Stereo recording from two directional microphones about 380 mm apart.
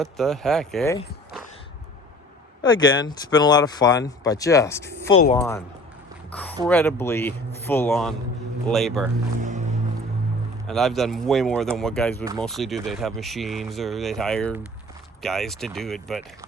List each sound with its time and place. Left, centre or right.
0.0 s speech: centre
2.6 s speech: centre
5.0 s speech: left
5.3 s speech: centre
9.4 s music: centre
10.7 s speech: centre